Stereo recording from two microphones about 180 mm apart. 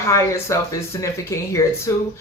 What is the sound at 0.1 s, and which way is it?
Speech, 15° left (ahead or behind).